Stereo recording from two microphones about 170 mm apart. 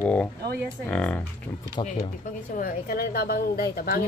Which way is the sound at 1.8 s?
30° left (ahead or behind).